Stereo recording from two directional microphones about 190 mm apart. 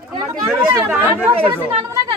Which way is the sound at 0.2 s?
15° right (ahead or behind).